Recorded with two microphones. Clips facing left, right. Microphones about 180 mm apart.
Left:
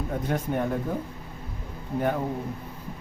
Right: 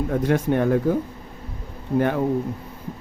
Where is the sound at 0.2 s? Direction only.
85° right.